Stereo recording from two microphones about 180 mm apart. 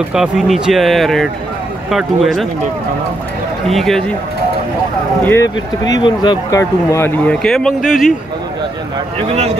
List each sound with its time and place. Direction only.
0.1 s speech: 5° right (ahead or behind)
3.6 s speech: centre (ahead or behind)
5.2 s speech: 15° left (ahead or behind); by 8.1 s centre (ahead or behind)